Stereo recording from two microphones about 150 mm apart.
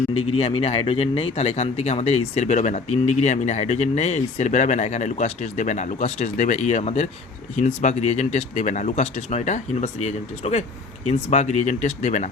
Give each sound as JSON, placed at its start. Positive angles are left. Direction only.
{"t": 0.1, "sound": "speech", "side_deg": 40}